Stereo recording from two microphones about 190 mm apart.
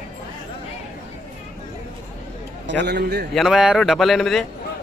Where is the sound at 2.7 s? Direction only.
60° right (ahead or behind).